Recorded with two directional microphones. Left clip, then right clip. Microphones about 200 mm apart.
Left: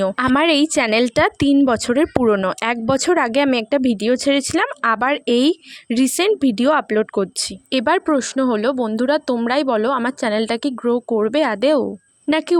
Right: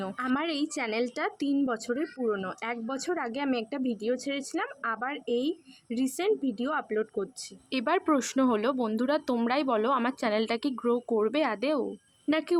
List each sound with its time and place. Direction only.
0.0 s a woman's voice: 45° left (ahead or behind)
7.7 s speech: 35° left (ahead or behind)